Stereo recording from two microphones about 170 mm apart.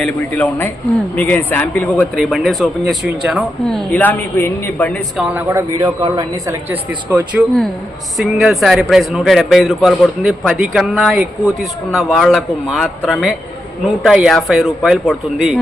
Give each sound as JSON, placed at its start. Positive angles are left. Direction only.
{"t": 0.0, "sound": "speech", "side_deg": 10}
{"t": 5.1, "sound": "a woman's voice", "side_deg": -15}
{"t": 6.7, "sound": "a woman's voice", "side_deg": -10}